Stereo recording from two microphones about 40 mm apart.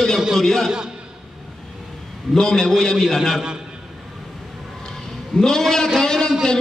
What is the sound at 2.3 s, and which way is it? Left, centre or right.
A man's voice, centre.